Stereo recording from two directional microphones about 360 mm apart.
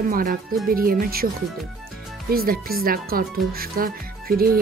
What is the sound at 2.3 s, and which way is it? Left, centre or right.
Speech, right.